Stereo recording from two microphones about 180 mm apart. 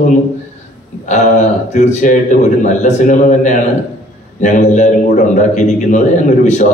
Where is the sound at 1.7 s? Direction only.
40° left (ahead or behind).